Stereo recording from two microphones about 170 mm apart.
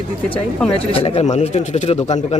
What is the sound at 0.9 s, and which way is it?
Speech, 35° left (ahead or behind).